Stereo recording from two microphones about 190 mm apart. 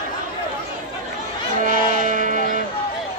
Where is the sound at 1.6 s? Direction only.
45° right (ahead or behind).